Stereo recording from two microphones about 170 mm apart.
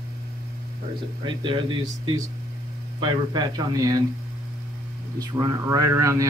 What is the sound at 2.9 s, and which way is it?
A man's voice, 25° right (ahead or behind).